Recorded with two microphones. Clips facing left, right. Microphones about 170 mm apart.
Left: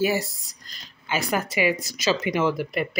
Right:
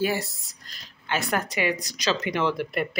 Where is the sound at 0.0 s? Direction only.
5° left (ahead or behind).